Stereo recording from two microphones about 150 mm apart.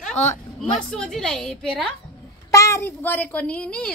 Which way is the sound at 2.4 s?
20° left (ahead or behind).